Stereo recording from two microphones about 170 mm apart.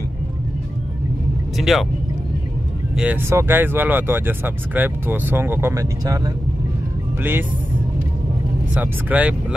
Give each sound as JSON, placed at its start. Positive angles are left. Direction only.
{"t": 1.6, "sound": "speech", "side_deg": 0}
{"t": 3.0, "sound": "speech", "side_deg": -10}
{"t": 8.7, "sound": "speech", "side_deg": -5}